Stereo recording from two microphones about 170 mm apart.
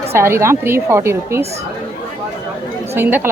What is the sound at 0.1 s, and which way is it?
Speech, 15° right (ahead or behind).